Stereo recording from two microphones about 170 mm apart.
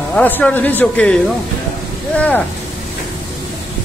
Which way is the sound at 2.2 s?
10° left (ahead or behind).